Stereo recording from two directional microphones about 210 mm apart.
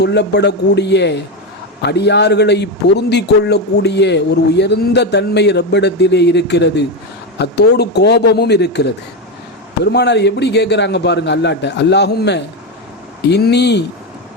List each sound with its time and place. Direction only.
0.0 s a man's voice: 55° left (ahead or behind)